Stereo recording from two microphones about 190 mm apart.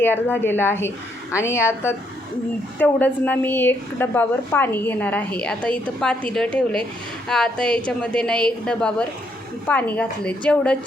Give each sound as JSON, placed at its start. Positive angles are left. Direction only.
{"t": 0.0, "sound": "a woman's voice", "side_deg": 10}